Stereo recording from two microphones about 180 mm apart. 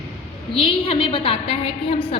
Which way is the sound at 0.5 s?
30° left (ahead or behind).